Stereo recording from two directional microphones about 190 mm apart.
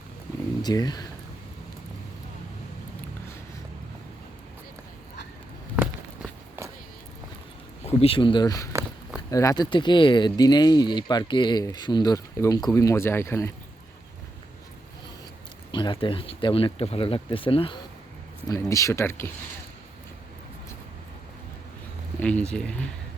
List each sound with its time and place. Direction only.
0.6 s speech: 20° left (ahead or behind)
7.9 s speech: 30° left (ahead or behind); by 13.5 s 15° left (ahead or behind)
15.7 s speech: 25° left (ahead or behind)
18.7 s speech: 15° left (ahead or behind)
22.2 s speech: 5° left (ahead or behind)